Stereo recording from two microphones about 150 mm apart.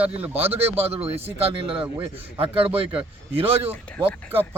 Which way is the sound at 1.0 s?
40° right (ahead or behind).